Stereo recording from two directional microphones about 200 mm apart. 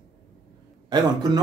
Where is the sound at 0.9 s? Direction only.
20° right (ahead or behind).